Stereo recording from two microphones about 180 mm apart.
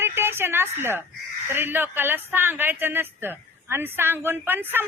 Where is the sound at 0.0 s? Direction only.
15° right (ahead or behind).